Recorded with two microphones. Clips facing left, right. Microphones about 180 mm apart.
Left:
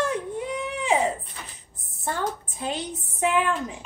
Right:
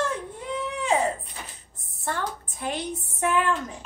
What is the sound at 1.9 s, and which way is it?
A woman's voice, 20° left (ahead or behind).